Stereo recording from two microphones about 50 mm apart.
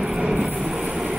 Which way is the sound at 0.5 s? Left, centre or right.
Centre.